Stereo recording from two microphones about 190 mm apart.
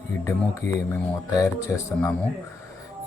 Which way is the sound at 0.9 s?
15° left (ahead or behind).